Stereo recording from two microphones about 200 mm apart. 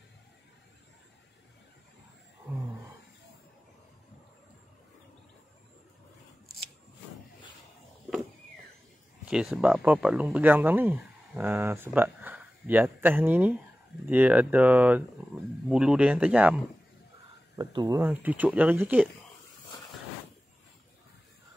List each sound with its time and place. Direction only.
9.3 s speech: 5° right (ahead or behind)
17.6 s speech: 20° right (ahead or behind)
18.0 s speech: 5° right (ahead or behind)